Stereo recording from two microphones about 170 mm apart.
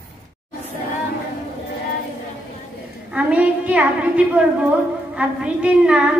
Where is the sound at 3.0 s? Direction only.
5° right (ahead or behind).